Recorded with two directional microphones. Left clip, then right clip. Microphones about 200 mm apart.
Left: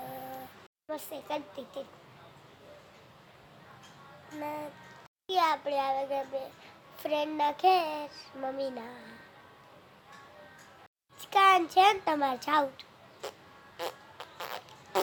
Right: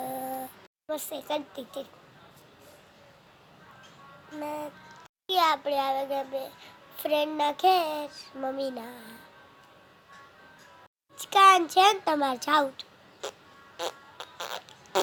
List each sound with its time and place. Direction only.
0.9 s a woman's voice: 20° right (ahead or behind)
4.4 s a child's voice: 15° right (ahead or behind)
11.2 s a child's voice: 20° right (ahead or behind)
13.7 s fart: 15° right (ahead or behind)